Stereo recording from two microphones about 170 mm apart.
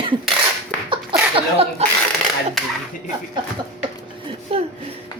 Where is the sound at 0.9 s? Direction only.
30° right (ahead or behind).